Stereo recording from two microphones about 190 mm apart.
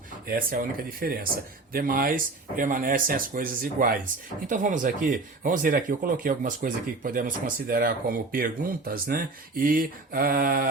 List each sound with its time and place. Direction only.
0.3 s speech: 50° right (ahead or behind)